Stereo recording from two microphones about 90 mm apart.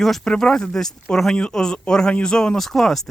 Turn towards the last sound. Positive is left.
turn(degrees=5)  # may be behind; listen again after turning